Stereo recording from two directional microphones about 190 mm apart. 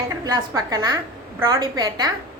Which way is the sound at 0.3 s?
20° right (ahead or behind).